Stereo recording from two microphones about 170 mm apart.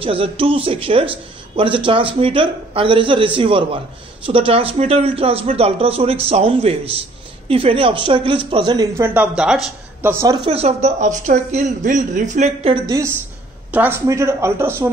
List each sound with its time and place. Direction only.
0.0 s speech: 30° right (ahead or behind)
8.9 s speech: 10° right (ahead or behind)
10.1 s speech: 25° right (ahead or behind)
13.7 s speech: 10° right (ahead or behind)